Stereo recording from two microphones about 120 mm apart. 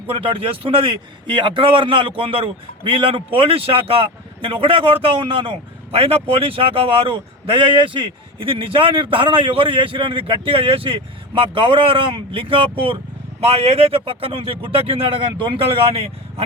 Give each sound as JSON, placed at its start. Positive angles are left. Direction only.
{"t": 0.1, "sound": "a man's voice", "side_deg": -45}